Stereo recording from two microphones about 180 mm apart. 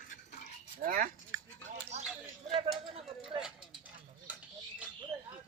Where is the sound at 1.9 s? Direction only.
40° right (ahead or behind).